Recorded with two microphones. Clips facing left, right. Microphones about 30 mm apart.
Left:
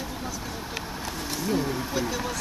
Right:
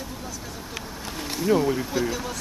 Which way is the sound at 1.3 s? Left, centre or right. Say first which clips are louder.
Right 6 dB; centre.